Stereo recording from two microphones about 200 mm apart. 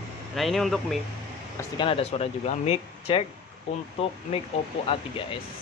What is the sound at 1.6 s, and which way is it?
Speech, 25° left (ahead or behind).